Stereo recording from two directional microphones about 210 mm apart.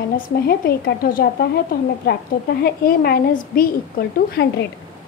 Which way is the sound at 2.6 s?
45° left (ahead or behind).